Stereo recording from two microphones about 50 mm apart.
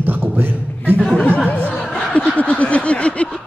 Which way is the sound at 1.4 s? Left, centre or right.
Left.